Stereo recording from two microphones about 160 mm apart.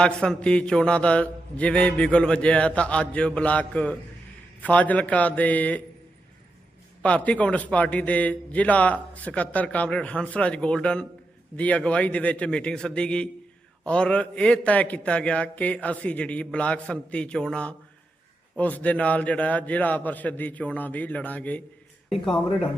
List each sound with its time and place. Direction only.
0.0 s a man's voice: 5° left (ahead or behind)
7.0 s a man's voice: 10° left (ahead or behind)